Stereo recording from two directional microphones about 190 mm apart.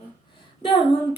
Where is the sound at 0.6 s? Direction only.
25° left (ahead or behind).